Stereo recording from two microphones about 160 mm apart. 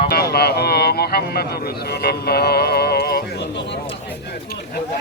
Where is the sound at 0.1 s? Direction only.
75° left (ahead or behind).